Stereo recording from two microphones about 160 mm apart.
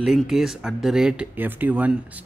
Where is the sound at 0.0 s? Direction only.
Centre (ahead or behind).